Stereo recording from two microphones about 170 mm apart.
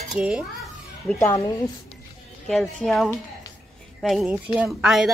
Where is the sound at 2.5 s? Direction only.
Centre (ahead or behind).